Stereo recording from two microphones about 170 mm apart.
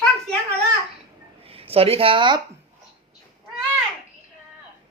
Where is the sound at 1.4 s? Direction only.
35° right (ahead or behind).